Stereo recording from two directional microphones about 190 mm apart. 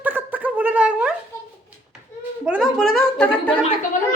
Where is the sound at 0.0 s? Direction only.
10° right (ahead or behind).